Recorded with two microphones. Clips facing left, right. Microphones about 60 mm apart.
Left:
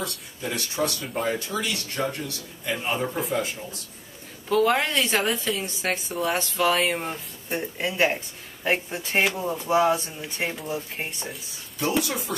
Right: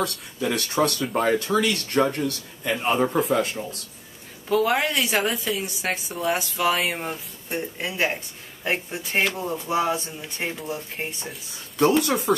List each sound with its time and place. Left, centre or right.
0.4 s speech: right
4.5 s a woman's voice: centre
12.0 s speech: right